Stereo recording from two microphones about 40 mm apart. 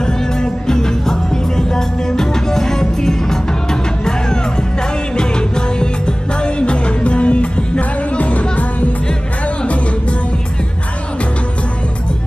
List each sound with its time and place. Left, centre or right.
0.0 s music: centre
5.1 s music: left